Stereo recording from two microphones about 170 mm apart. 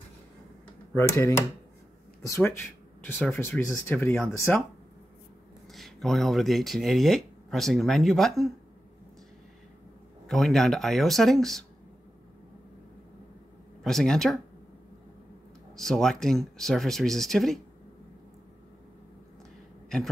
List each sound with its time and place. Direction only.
0.9 s speech: 15° left (ahead or behind)
5.7 s speech: centre (ahead or behind)
10.2 s speech: centre (ahead or behind)
13.8 s speech: 5° left (ahead or behind)
15.7 s speech: centre (ahead or behind)